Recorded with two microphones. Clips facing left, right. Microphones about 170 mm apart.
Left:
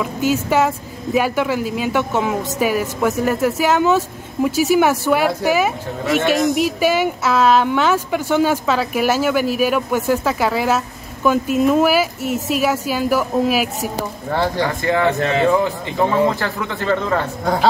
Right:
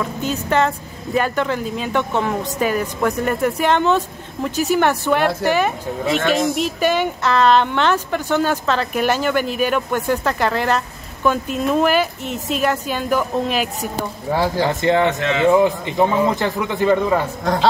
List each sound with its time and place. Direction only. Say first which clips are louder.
0.0 s speech: left 4 dB; 5° left (ahead or behind)
14.3 s speech: right 1 dB; 10° right (ahead or behind)
14.7 s speech: right 2 dB; 20° right (ahead or behind)
15.1 s speech: left 2 dB; 35° left (ahead or behind)
16.3 s speech: right 3 dB; 15° right (ahead or behind)